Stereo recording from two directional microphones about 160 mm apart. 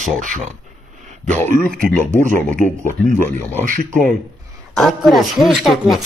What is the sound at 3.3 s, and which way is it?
Speech, 10° left (ahead or behind).